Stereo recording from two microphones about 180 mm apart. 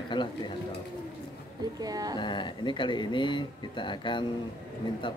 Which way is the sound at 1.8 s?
20° right (ahead or behind).